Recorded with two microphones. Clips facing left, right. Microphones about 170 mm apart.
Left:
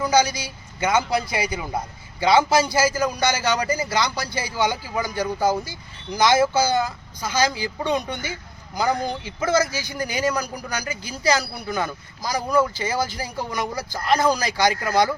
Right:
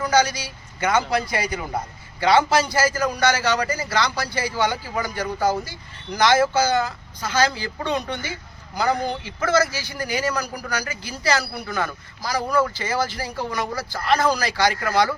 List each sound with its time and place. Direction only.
0.0 s a man's voice: 10° left (ahead or behind)